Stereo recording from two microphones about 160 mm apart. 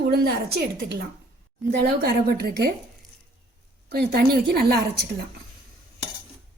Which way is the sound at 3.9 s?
75° right (ahead or behind).